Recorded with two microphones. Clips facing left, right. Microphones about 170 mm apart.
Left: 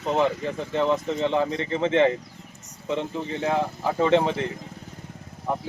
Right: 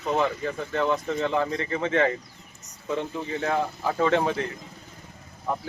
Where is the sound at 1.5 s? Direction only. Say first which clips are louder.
Left 3 dB; 25° left (ahead or behind).